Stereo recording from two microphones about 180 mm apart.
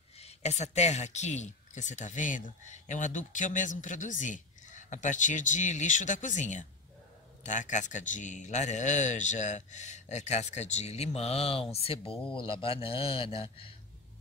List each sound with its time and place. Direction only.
0.2 s a man's voice: 35° left (ahead or behind)